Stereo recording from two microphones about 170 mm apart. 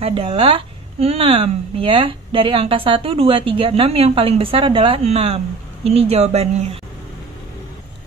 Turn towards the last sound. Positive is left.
turn(degrees=-40)  # may be behind; listen again after turning